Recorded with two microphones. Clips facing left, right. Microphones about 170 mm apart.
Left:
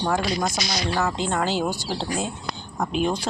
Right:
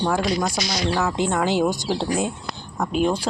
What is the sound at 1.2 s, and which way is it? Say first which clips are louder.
Speech: right 3 dB; 10° right (ahead or behind).